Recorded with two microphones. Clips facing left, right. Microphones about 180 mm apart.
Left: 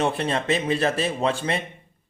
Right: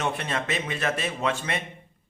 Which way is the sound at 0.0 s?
30° left (ahead or behind).